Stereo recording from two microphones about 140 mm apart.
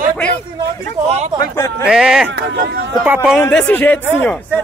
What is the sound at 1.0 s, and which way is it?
Speech, 50° right (ahead or behind).